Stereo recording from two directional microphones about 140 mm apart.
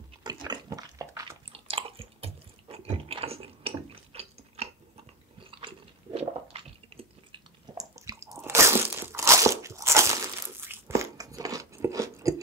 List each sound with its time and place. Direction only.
0.2 s pig: 30° right (ahead or behind)
1.5 s a sound: 40° right (ahead or behind)
5.5 s chewing: 40° right (ahead or behind)
7.7 s crunch: 25° right (ahead or behind)